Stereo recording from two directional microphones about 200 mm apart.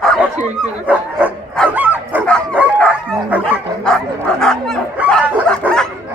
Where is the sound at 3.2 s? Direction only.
5° right (ahead or behind).